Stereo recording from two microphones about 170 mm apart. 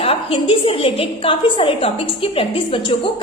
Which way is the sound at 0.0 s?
35° left (ahead or behind).